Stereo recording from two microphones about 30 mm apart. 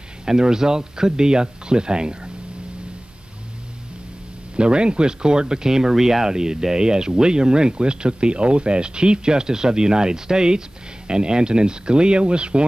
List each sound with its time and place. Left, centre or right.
0.3 s speech: right
4.6 s speech: right